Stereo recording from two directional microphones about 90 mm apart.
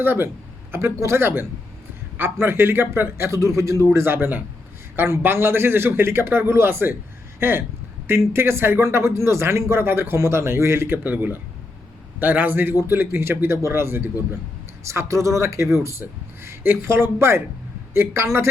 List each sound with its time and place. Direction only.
0.0 s a man's voice: 25° right (ahead or behind)